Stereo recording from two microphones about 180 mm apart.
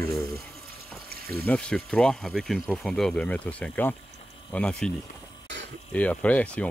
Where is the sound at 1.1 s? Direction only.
60° right (ahead or behind).